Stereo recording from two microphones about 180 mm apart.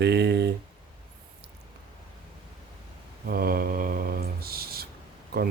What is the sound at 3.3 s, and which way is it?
Mantra, 55° right (ahead or behind).